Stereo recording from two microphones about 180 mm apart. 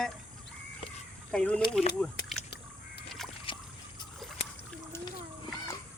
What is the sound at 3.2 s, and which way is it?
Boat, centre (ahead or behind).